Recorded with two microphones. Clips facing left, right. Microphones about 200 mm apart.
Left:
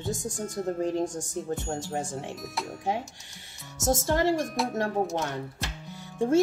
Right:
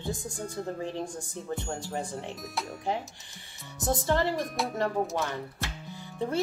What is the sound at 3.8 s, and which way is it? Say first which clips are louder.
Speech: left 3 dB; 45° left (ahead or behind).